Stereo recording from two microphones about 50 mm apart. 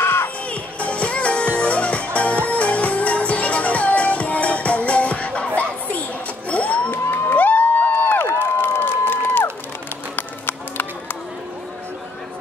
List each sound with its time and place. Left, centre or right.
0.0 s crowd: left
0.5 s music: left
6.5 s a sound: left
6.9 s crowd: left
7.3 s a sound: left
8.4 s crowd: left
10.1 s run: left